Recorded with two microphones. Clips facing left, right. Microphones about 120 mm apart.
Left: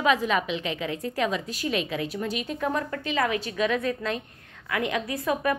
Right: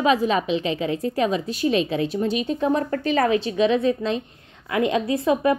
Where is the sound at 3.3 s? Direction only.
25° right (ahead or behind).